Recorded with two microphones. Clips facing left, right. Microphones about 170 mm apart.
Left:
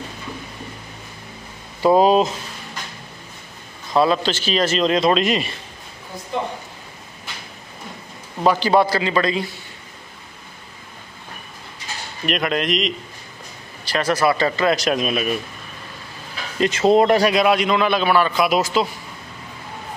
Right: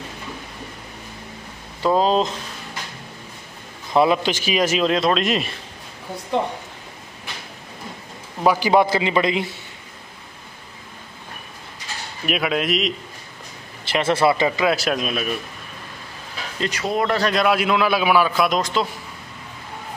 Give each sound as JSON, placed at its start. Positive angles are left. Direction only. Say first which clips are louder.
{"t": 1.8, "sound": "speech", "louder": "left 4 dB", "side_deg": 10}
{"t": 3.9, "sound": "a man's voice", "louder": "even", "side_deg": -15}
{"t": 8.5, "sound": "a man's voice", "louder": "even", "side_deg": -15}
{"t": 12.3, "sound": "a man's voice", "louder": "even", "side_deg": -5}
{"t": 13.8, "sound": "a man's voice", "louder": "right 1 dB", "side_deg": -25}
{"t": 14.6, "sound": "a man's voice", "louder": "left 2 dB", "side_deg": -5}
{"t": 16.5, "sound": "speech", "louder": "left 8 dB", "side_deg": 25}
{"t": 17.2, "sound": "a man's voice", "louder": "left 2 dB", "side_deg": 5}